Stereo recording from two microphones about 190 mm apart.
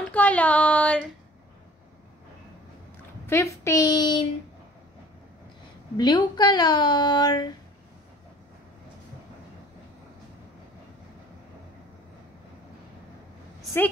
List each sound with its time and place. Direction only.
0.1 s speech: 5° left (ahead or behind)
3.3 s speech: 15° left (ahead or behind)
5.9 s speech: 20° left (ahead or behind)